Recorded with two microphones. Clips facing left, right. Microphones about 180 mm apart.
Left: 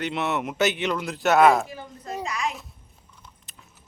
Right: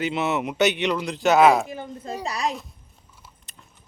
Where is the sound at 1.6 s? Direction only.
20° right (ahead or behind).